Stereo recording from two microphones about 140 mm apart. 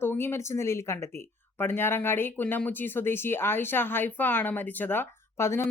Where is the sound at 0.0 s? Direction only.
15° left (ahead or behind).